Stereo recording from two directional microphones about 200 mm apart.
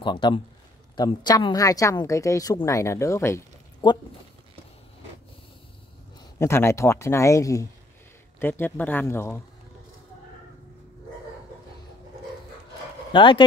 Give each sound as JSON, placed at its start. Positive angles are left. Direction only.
{"t": 0.0, "sound": "a woman's voice", "side_deg": 25}
{"t": 6.4, "sound": "a woman's voice", "side_deg": 15}
{"t": 13.1, "sound": "speech", "side_deg": 25}